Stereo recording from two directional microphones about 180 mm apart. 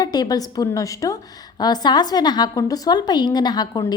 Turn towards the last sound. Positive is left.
turn(degrees=25)  # may be behind; listen again after turning